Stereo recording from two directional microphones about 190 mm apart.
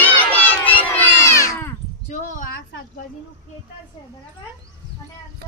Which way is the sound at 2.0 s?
40° left (ahead or behind).